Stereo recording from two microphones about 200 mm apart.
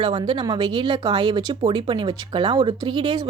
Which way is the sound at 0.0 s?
25° right (ahead or behind).